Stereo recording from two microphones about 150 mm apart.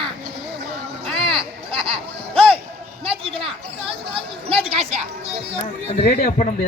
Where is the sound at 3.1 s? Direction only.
40° right (ahead or behind).